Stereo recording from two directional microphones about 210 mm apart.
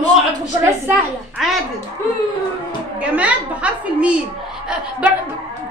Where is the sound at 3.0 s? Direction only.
5° right (ahead or behind).